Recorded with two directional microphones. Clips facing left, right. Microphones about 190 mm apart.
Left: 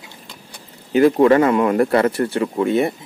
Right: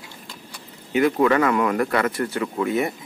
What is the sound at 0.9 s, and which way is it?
Speech, 30° left (ahead or behind).